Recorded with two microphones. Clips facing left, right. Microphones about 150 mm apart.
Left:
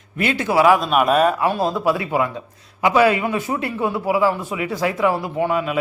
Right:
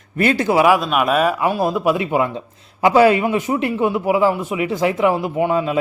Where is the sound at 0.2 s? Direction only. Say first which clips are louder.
Right 5 dB; 40° right (ahead or behind).